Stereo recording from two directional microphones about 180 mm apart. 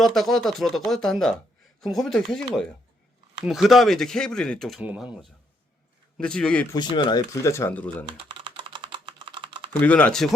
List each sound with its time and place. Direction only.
0.0 s speech: centre (ahead or behind)
4.8 s speech: 10° right (ahead or behind)
6.1 s speech: 5° left (ahead or behind)
6.7 s speech: 25° left (ahead or behind); by 8.0 s 10° left (ahead or behind)
8.0 s typing: 30° right (ahead or behind)
9.8 s speech: 10° left (ahead or behind)